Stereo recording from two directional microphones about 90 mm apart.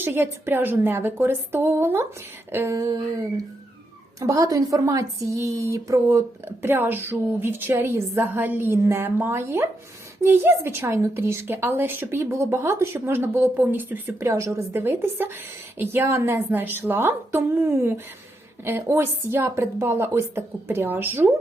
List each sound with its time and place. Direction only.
0.0 s a woman's voice: 25° right (ahead or behind)
2.7 s a sound: 40° right (ahead or behind)
4.2 s a woman's voice: 40° right (ahead or behind); by 14.0 s 20° right (ahead or behind)
14.1 s a woman's voice: 30° right (ahead or behind)